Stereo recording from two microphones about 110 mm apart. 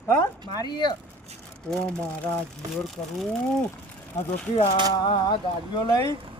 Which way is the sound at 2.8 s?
5° left (ahead or behind).